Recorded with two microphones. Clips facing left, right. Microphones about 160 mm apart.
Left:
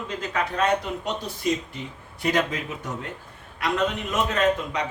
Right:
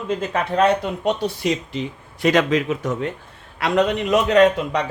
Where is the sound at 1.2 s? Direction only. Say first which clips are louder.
Right 4 dB; 80° right.